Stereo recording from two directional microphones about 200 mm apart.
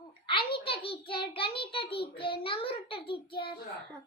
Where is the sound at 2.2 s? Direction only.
25° left (ahead or behind).